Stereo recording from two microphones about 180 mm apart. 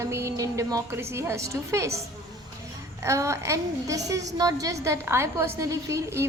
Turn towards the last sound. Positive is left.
turn(degrees=-15)  # may be behind; listen again after turning